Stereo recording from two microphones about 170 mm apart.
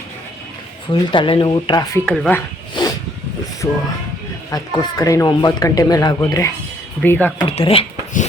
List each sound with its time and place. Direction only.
0.9 s speech: 30° left (ahead or behind)
2.0 s speech: 5° left (ahead or behind)
2.8 s a sound: 25° left (ahead or behind)
3.6 s speech: 20° left (ahead or behind)
7.4 s speech: 35° left (ahead or behind)